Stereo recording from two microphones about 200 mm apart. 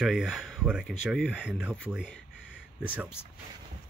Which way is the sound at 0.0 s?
Centre (ahead or behind).